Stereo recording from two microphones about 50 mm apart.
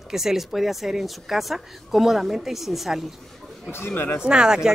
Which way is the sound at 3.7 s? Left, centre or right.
Left.